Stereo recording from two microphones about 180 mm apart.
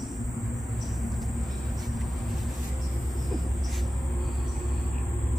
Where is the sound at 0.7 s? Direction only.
Centre (ahead or behind).